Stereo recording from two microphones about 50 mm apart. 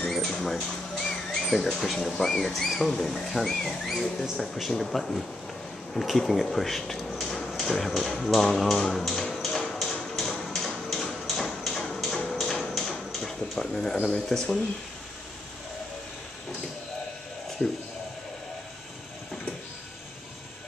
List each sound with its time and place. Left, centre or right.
0.0 s a sound: centre
0.6 s speech: centre
8.8 s a sound: centre
12.3 s tap: centre
13.2 s speech: centre
17.6 s speech: left